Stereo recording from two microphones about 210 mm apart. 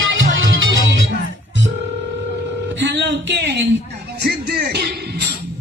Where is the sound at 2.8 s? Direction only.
55° right (ahead or behind).